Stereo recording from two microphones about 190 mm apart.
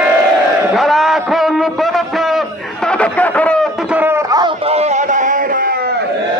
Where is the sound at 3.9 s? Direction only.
10° right (ahead or behind).